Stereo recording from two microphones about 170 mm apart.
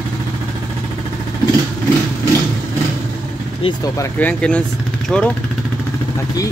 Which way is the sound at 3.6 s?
25° left (ahead or behind).